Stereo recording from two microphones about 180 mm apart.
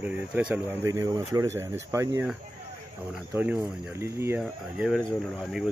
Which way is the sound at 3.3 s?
10° right (ahead or behind).